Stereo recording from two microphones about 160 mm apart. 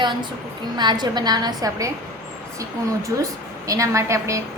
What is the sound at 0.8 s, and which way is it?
A woman's voice, 25° right (ahead or behind).